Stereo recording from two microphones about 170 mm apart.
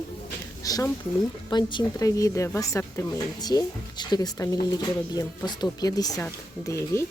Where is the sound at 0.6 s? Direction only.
20° left (ahead or behind).